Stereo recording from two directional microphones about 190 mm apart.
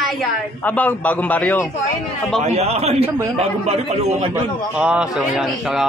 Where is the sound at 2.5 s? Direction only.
35° right (ahead or behind).